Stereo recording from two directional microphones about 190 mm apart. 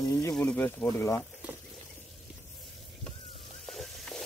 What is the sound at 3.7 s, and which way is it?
Sizzle, centre (ahead or behind).